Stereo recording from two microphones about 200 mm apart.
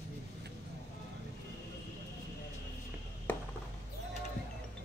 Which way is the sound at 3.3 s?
10° left (ahead or behind).